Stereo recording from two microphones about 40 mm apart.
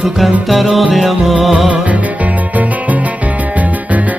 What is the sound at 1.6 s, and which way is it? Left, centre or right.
Music, right.